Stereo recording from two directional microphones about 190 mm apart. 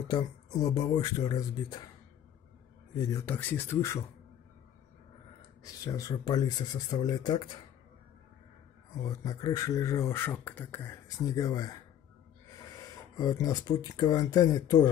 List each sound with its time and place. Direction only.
0.1 s speech: 20° left (ahead or behind)
3.0 s speech: 15° left (ahead or behind)
5.6 s speech: 20° left (ahead or behind)
9.0 s speech: 20° left (ahead or behind)
13.1 s speech: 20° left (ahead or behind)